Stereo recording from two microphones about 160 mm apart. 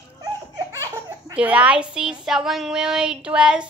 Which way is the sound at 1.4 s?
10° right (ahead or behind).